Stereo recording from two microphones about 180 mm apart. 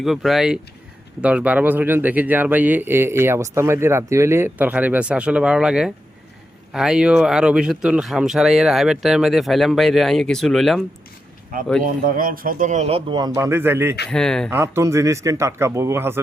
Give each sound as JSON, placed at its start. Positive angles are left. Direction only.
{"t": 0.0, "sound": "a man's voice", "side_deg": 0}
{"t": 11.8, "sound": "speech", "side_deg": -50}
{"t": 14.1, "sound": "speech", "side_deg": 5}
{"t": 14.5, "sound": "a man's voice", "side_deg": -15}